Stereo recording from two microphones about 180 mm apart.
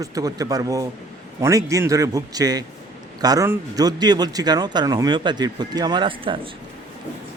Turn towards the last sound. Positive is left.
turn(degrees=-30)  # may be behind; listen again after turning